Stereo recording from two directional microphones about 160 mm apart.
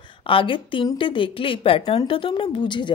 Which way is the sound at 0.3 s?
35° left (ahead or behind).